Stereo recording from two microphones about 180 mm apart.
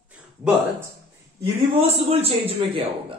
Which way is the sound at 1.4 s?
35° right (ahead or behind).